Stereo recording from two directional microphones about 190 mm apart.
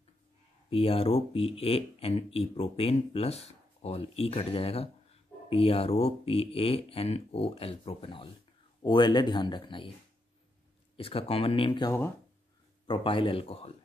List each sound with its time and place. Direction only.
0.7 s speech: 30° left (ahead or behind)
11.0 s speech: 30° left (ahead or behind)